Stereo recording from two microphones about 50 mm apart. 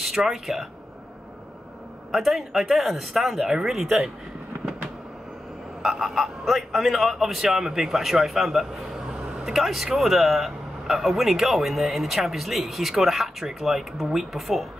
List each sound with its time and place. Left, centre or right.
0.0 s speech: centre
2.1 s speech: centre
5.8 s speech: centre
9.0 s a sound: centre
9.4 s speech: centre